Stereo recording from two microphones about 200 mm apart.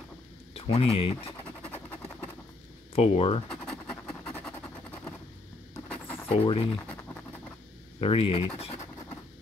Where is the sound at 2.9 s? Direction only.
30° left (ahead or behind).